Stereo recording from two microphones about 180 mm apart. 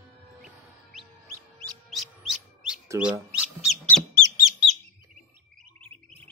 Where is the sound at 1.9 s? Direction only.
Centre (ahead or behind).